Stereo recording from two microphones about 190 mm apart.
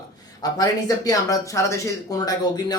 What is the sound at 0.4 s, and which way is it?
Speech, 20° left (ahead or behind).